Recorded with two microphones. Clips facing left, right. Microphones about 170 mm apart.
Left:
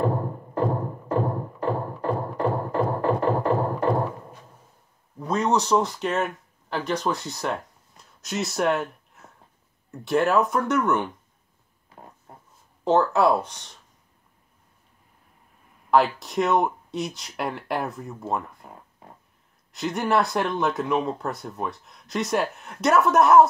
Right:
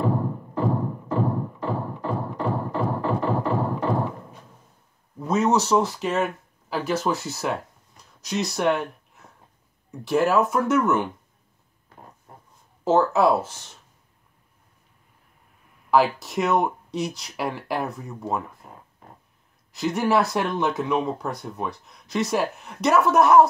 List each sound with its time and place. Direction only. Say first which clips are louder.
0.0 s music: right 1 dB; 55° left (ahead or behind)
5.2 s speech: right 2 dB; 5° right (ahead or behind)
8.0 s a sound: right 2 dB; centre (ahead or behind)
9.8 s speech: right 1 dB; centre (ahead or behind)
12.8 s speech: right 1 dB; centre (ahead or behind)
15.9 s speech: even; centre (ahead or behind)
19.7 s speech: right 2 dB; centre (ahead or behind)